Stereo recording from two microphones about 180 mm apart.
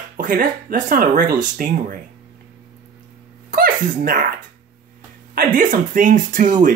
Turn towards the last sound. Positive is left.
turn(degrees=-45)  # may be behind; listen again after turning